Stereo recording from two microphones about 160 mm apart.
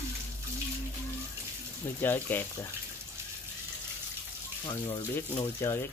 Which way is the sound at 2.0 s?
10° left (ahead or behind).